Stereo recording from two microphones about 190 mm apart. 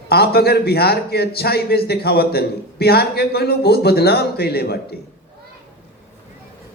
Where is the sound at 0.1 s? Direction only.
55° left (ahead or behind).